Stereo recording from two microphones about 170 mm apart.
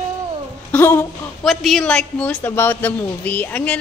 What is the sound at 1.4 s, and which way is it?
A woman's voice, centre (ahead or behind).